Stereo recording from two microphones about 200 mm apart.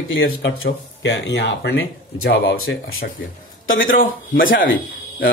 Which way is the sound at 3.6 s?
75° left (ahead or behind).